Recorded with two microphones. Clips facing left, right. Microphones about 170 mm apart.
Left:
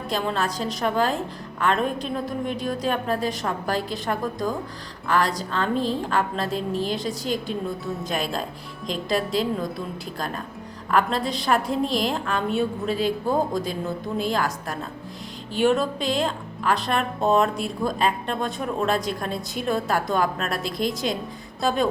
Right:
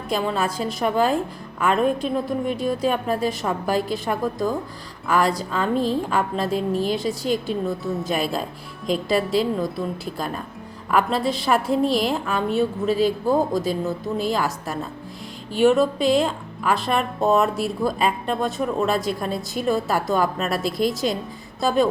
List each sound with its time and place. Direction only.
0.1 s a woman's voice: 5° right (ahead or behind)
5.7 s a woman's voice: 40° right (ahead or behind)
6.1 s a woman's voice: 5° right (ahead or behind)
15.6 s speech: 5° right (ahead or behind)